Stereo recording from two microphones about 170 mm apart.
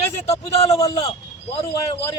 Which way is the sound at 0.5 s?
40° left (ahead or behind).